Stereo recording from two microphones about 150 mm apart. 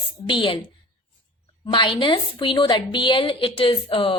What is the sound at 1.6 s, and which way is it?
A woman's voice, 30° left (ahead or behind).